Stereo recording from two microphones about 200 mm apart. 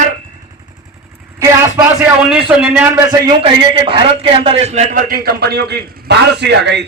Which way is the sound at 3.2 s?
25° right (ahead or behind).